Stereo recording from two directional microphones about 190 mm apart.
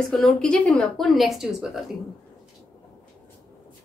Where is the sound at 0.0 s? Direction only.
Centre (ahead or behind).